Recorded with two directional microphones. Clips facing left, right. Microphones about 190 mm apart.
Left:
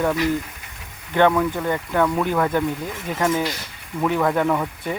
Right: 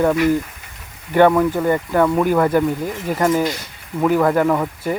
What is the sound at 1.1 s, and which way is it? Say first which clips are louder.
Speech: right 4 dB; 10° right (ahead or behind).